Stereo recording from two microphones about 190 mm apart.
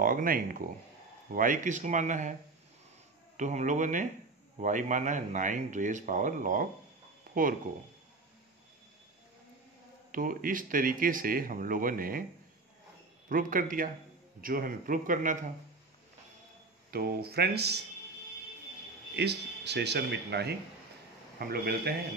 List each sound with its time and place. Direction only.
0.0 s speech: 45° right (ahead or behind)
3.3 s speech: 40° right (ahead or behind)
7.2 s a sound: 45° right (ahead or behind)
10.1 s speech: 45° right (ahead or behind)
13.3 s speech: 45° right (ahead or behind)
16.9 s speech: 55° right (ahead or behind)
19.1 s speech: 60° right (ahead or behind)